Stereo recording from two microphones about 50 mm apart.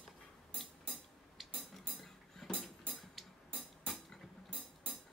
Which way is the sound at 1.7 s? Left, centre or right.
Centre.